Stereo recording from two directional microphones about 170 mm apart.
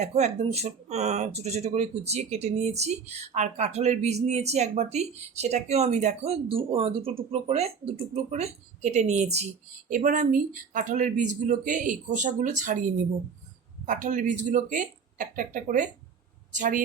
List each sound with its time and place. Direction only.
0.0 s speech: 40° right (ahead or behind)
9.9 s speech: 50° right (ahead or behind)
13.8 s speech: 50° right (ahead or behind)